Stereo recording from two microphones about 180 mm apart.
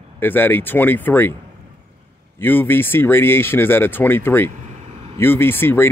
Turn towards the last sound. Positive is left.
turn(degrees=10)  # may be behind; listen again after turning